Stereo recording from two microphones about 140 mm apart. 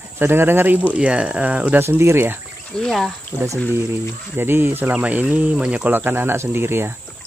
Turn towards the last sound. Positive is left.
turn(degrees=-15)  # may be behind; listen again after turning